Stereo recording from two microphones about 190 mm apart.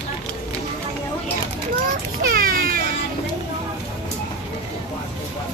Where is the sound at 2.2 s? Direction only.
50° right (ahead or behind).